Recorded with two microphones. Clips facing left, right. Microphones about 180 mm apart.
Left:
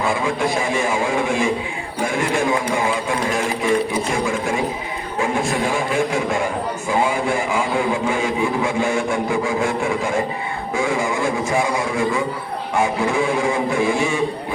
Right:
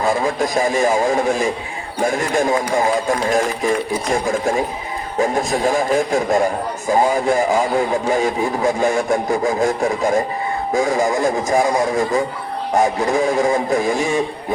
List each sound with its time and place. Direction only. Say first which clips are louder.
0.0 s a man's voice: right 2 dB; 40° right (ahead or behind)